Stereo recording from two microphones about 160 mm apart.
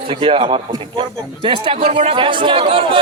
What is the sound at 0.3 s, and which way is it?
A man's voice, 35° right (ahead or behind).